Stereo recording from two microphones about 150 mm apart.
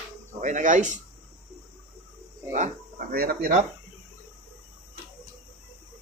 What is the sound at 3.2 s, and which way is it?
Speech, 85° right.